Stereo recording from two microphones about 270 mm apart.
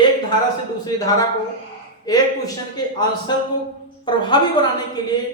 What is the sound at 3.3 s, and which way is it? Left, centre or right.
Speech, centre.